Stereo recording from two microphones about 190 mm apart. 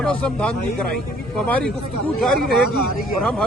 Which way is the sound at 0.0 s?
5° left (ahead or behind).